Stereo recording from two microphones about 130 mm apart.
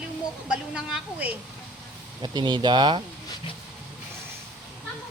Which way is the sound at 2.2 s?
35° right (ahead or behind).